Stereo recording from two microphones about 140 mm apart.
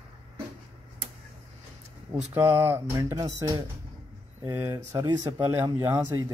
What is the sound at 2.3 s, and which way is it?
Speech, 15° right (ahead or behind).